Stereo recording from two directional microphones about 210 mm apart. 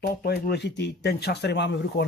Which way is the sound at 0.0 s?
50° left (ahead or behind).